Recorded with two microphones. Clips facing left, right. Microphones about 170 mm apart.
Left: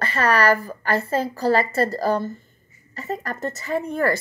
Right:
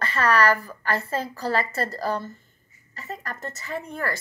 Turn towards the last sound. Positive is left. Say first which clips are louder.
# left 8 dB
turn(degrees=50)  # may be behind; listen again after turning